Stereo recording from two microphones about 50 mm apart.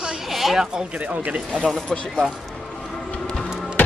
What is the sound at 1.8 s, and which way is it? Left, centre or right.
Speech, centre.